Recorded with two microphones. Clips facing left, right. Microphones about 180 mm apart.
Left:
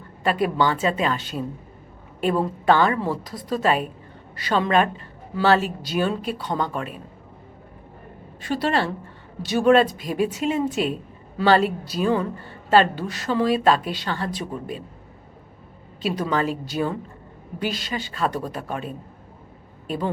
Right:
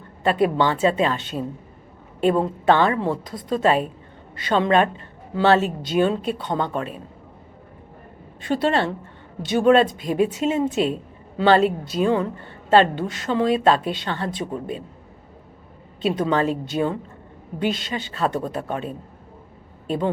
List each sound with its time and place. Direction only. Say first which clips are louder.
0.2 s a woman's voice: right 2 dB; 25° right (ahead or behind)
8.4 s a woman's voice: right 2 dB; 25° right (ahead or behind)
16.0 s a woman's voice: right 3 dB; 25° right (ahead or behind)